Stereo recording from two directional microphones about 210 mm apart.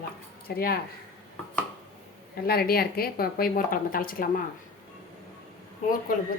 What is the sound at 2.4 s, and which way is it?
A woman's voice, 45° left (ahead or behind).